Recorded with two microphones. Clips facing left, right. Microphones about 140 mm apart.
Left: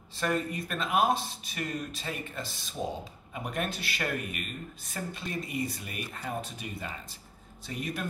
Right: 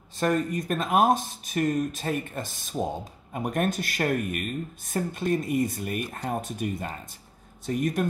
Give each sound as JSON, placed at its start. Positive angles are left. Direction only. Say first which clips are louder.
{"t": 0.2, "sound": "speech", "louder": "right 5 dB", "side_deg": -45}